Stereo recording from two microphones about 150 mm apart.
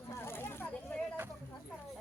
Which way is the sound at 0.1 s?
15° left (ahead or behind).